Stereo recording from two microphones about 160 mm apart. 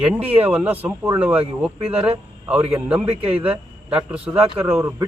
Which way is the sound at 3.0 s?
35° right (ahead or behind).